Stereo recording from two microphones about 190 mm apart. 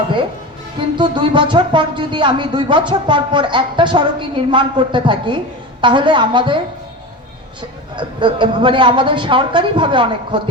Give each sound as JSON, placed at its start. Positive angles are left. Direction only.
{"t": 0.9, "sound": "speech", "side_deg": -25}
{"t": 7.9, "sound": "speech", "side_deg": -25}